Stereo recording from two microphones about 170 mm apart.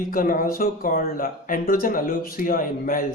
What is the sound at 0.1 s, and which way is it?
Speech, 55° left (ahead or behind).